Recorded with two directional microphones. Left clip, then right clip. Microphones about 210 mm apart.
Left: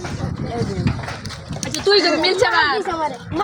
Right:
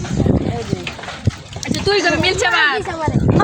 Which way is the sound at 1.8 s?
10° right (ahead or behind).